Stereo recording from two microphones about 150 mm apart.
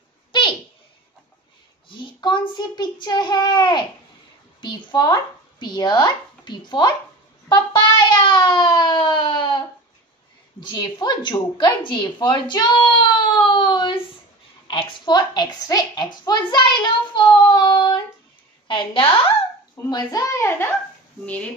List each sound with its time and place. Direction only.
0.3 s a sound: 30° left (ahead or behind)
1.9 s a child's voice: 35° left (ahead or behind)
10.6 s a woman's voice: 30° left (ahead or behind)
13.4 s a sound: 30° left (ahead or behind)
14.7 s a woman's voice: 30° left (ahead or behind)
19.8 s a woman's voice: 25° left (ahead or behind)